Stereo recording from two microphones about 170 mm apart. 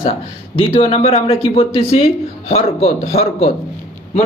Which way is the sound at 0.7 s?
35° left (ahead or behind).